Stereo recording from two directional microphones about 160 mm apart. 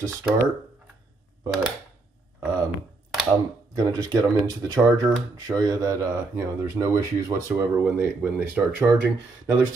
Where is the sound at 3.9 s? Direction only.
25° right (ahead or behind).